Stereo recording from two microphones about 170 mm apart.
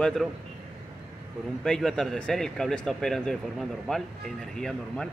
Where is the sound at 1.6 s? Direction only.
5° left (ahead or behind).